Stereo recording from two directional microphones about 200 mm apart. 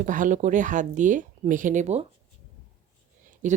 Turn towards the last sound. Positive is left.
turn(degrees=-40)  # may be behind; listen again after turning